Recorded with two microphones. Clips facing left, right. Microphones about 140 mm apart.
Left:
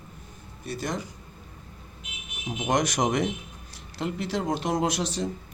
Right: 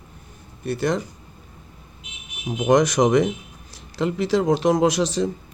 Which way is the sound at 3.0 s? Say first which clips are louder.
Right 8 dB; 90° right.